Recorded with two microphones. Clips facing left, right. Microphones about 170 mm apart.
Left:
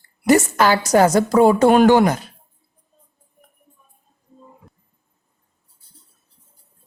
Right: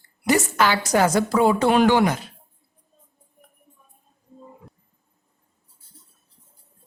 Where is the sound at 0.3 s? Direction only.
45° left (ahead or behind).